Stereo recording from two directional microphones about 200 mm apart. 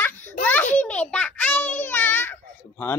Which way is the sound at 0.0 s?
10° left (ahead or behind).